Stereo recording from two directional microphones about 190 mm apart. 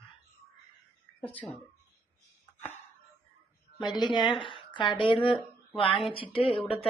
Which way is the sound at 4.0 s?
20° left (ahead or behind).